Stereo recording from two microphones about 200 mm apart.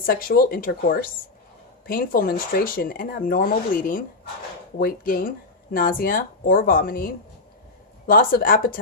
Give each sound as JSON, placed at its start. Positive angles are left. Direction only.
{"t": 0.0, "sound": "speech", "side_deg": 45}